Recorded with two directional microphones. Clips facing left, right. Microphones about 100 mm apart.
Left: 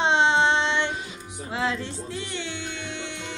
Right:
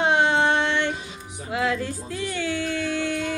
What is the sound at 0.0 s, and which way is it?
Child singing, 25° left (ahead or behind).